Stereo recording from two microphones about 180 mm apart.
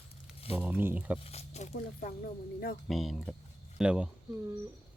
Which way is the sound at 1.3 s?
35° left (ahead or behind).